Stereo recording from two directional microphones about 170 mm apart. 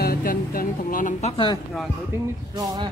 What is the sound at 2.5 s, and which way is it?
Speech, 20° right (ahead or behind).